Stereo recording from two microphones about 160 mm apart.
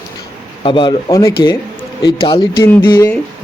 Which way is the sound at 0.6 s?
30° left (ahead or behind).